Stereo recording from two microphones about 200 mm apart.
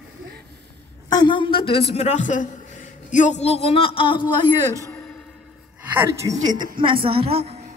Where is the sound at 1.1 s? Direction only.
25° left (ahead or behind).